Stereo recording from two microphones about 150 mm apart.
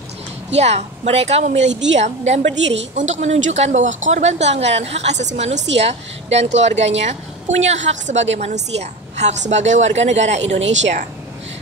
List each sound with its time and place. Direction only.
0.6 s a woman's voice: 45° right (ahead or behind)